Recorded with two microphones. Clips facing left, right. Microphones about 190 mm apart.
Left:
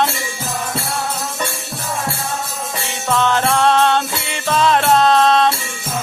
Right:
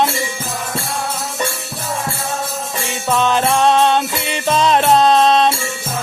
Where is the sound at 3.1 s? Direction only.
15° right (ahead or behind).